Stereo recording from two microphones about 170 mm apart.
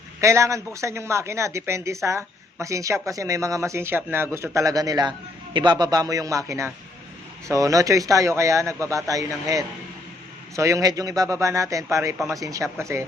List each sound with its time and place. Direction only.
0.2 s speech: 15° right (ahead or behind)